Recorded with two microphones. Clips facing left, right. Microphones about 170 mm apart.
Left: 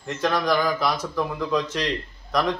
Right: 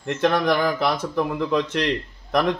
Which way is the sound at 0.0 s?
60° right (ahead or behind).